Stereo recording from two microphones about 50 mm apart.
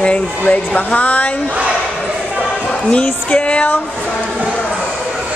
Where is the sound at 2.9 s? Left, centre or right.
Left.